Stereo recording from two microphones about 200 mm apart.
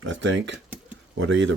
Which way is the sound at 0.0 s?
70° right (ahead or behind).